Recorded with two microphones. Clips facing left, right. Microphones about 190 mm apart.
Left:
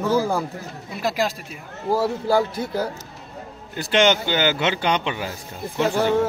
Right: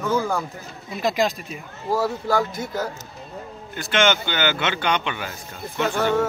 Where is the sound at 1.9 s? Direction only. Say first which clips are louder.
Left 2 dB; 30° left (ahead or behind).